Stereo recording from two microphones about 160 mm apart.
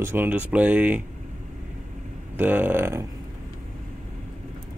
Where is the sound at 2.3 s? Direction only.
10° right (ahead or behind).